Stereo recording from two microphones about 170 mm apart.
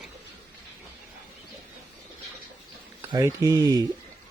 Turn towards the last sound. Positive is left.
turn(degrees=-20)  # may be behind; listen again after turning